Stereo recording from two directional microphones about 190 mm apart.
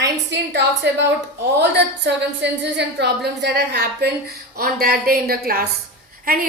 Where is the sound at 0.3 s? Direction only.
65° right (ahead or behind).